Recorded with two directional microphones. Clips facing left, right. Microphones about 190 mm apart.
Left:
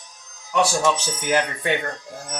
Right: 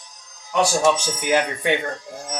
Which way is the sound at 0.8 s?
15° right (ahead or behind).